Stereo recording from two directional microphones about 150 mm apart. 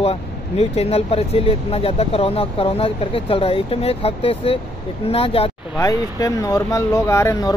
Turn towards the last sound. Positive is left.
turn(degrees=20)  # may be behind; listen again after turning